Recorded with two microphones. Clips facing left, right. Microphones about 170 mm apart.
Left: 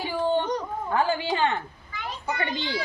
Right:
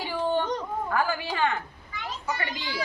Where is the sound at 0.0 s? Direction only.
15° left (ahead or behind).